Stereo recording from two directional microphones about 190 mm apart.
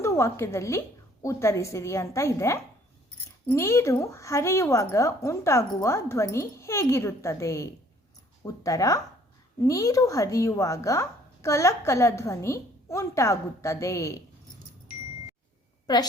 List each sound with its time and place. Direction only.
0.0 s a woman's voice: 15° left (ahead or behind)